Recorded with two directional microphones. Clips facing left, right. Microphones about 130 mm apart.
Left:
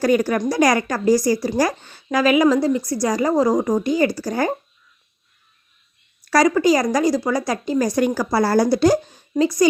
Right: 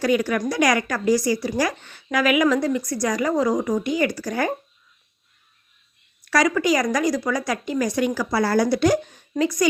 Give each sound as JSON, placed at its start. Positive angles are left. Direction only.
{"t": 0.0, "sound": "speech", "side_deg": 40}
{"t": 6.2, "sound": "speech", "side_deg": 35}